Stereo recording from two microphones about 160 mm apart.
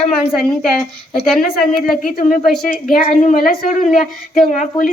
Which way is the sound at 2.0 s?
55° left (ahead or behind).